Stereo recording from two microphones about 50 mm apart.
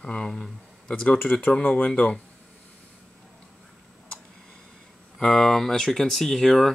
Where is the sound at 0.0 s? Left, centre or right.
Centre.